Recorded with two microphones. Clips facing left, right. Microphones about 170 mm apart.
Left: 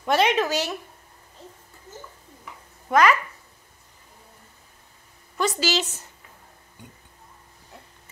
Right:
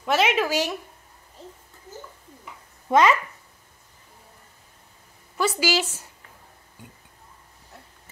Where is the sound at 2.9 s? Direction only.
25° right (ahead or behind).